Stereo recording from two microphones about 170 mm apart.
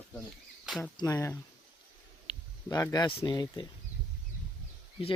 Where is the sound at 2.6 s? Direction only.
20° left (ahead or behind).